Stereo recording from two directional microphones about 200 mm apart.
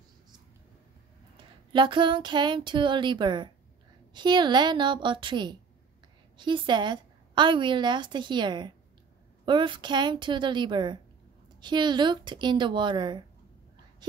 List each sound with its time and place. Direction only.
1.7 s a woman's voice: 25° right (ahead or behind)